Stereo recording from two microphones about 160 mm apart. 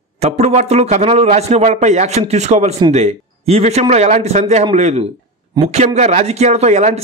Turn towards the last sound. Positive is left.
turn(degrees=-45)  # may be behind; listen again after turning